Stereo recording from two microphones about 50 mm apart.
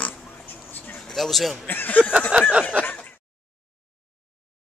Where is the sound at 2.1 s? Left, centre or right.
Centre.